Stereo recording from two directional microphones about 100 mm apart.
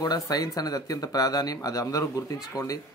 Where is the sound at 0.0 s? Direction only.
40° left (ahead or behind).